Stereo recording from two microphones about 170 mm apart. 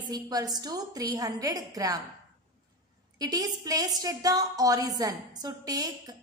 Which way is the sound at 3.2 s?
20° right (ahead or behind).